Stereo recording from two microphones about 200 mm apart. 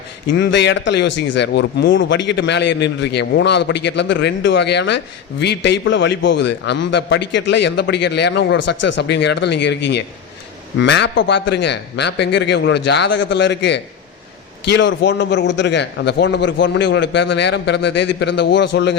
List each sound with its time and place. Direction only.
0.3 s a man's voice: 60° left (ahead or behind)